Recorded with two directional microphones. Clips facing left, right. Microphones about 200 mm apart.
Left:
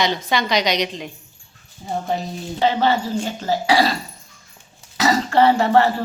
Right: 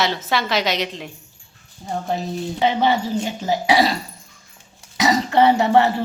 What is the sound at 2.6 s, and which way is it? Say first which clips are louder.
Speech: left 1 dB; 15° right (ahead or behind).